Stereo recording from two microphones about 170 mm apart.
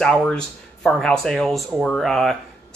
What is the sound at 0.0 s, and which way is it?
A man's voice, 5° left (ahead or behind).